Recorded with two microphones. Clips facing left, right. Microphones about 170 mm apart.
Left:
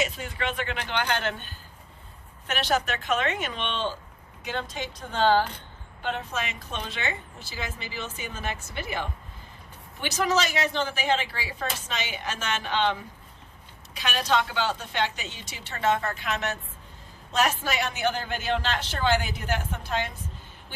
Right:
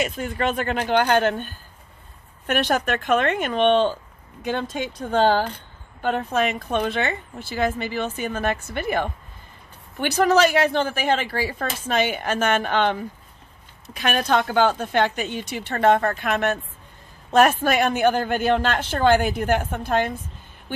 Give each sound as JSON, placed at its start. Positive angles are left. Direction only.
{"t": 0.0, "sound": "speech", "side_deg": -50}